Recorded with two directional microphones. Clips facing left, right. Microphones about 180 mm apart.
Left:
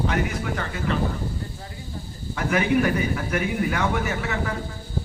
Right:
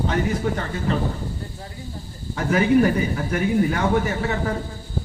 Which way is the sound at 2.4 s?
35° right (ahead or behind).